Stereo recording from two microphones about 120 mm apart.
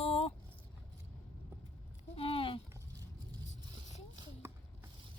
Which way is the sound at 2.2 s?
50° left (ahead or behind).